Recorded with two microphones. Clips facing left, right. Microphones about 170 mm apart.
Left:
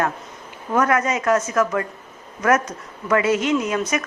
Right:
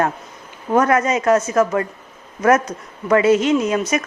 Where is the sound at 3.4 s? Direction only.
25° right (ahead or behind).